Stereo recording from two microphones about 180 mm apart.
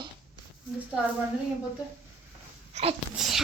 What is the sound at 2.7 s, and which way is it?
Sneeze, 35° right (ahead or behind).